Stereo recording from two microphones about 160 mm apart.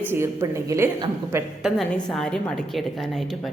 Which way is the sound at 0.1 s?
15° right (ahead or behind).